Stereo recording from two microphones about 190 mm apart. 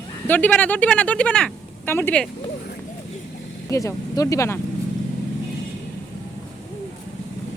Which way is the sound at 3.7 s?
15° left (ahead or behind).